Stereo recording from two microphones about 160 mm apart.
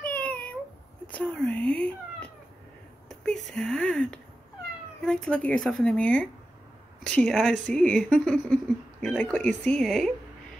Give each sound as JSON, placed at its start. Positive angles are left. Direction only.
{"t": 0.0, "sound": "meow", "side_deg": 10}
{"t": 1.0, "sound": "cat", "side_deg": 10}
{"t": 3.1, "sound": "a sound", "side_deg": 0}
{"t": 5.0, "sound": "a woman's voice", "side_deg": 5}